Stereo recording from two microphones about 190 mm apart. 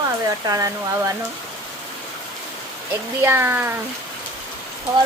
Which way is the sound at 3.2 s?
10° right (ahead or behind).